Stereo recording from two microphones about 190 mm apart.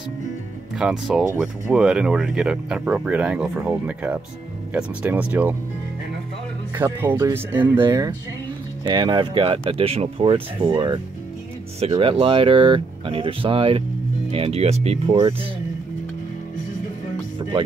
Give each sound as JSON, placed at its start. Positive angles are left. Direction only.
{"t": 0.7, "sound": "speech", "side_deg": -5}
{"t": 6.7, "sound": "speech", "side_deg": -10}
{"t": 17.4, "sound": "music", "side_deg": -25}